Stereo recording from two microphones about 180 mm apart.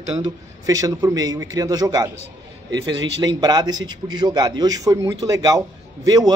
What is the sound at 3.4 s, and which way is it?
A man's voice, 25° right (ahead or behind).